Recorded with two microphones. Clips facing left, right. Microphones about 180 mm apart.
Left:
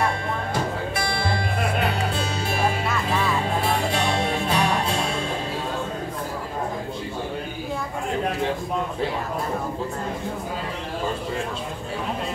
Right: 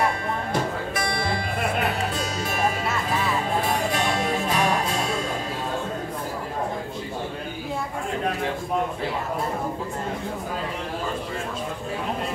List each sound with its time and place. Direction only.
2.1 s music: 30° left (ahead or behind)
3.9 s music: 30° left (ahead or behind)